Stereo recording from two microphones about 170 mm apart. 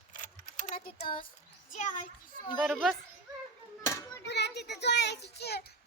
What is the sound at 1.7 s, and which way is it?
Speech, 45° left (ahead or behind).